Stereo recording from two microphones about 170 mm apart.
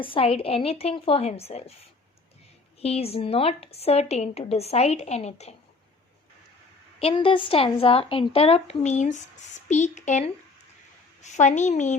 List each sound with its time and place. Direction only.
0.0 s a woman's voice: 30° left (ahead or behind)
7.0 s a woman's voice: 35° left (ahead or behind)